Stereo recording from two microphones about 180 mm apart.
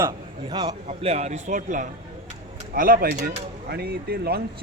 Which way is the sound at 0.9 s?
35° right (ahead or behind).